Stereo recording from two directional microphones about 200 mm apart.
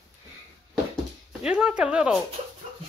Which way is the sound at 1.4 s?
5° right (ahead or behind).